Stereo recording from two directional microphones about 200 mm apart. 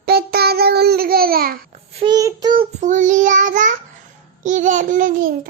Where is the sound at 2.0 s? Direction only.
20° right (ahead or behind).